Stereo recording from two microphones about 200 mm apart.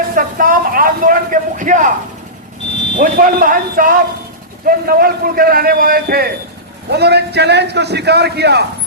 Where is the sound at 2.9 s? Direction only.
40° right (ahead or behind).